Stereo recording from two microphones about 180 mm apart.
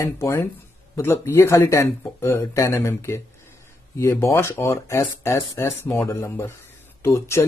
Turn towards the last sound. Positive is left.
turn(degrees=15)  # may be behind; listen again after turning